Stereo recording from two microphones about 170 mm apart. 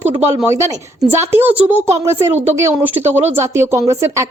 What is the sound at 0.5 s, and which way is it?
A woman's voice, 15° right (ahead or behind).